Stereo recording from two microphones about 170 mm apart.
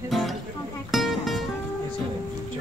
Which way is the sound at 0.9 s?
Centre (ahead or behind).